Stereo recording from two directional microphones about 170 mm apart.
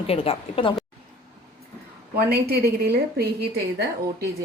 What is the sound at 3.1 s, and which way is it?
Speech, 70° right (ahead or behind).